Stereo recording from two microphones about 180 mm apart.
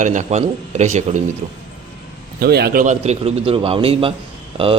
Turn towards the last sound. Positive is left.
turn(degrees=-30)  # may be behind; listen again after turning